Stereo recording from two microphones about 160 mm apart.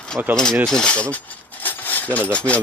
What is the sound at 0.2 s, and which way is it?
Speech, 10° right (ahead or behind).